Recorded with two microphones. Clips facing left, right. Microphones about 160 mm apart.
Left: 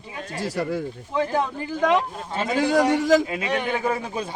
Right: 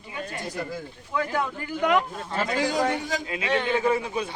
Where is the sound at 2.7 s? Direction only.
90° left.